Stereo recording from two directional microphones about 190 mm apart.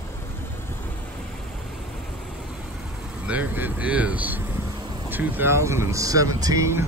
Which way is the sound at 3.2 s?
10° right (ahead or behind).